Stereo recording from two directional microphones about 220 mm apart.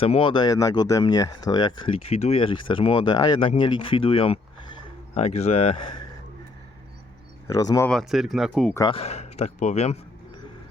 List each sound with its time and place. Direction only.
0.0 s speech: 25° left (ahead or behind)
7.4 s speech: 15° left (ahead or behind)
7.9 s speech: centre (ahead or behind)
8.7 s speech: 20° left (ahead or behind)